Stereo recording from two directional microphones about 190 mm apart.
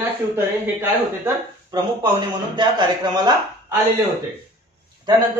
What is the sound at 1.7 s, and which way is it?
Speech, 20° right (ahead or behind).